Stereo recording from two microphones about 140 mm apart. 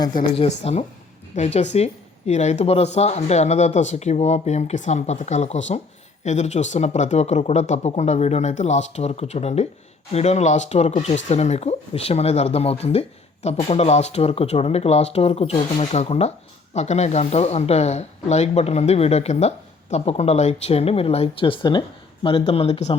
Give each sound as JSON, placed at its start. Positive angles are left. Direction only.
{"t": 0.3, "sound": "speech", "side_deg": 50}